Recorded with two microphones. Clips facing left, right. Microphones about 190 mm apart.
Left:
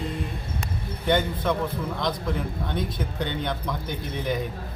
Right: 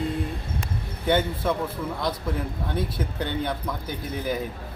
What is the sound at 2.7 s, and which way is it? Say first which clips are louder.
A man's voice: right 1 dB; 5° right (ahead or behind).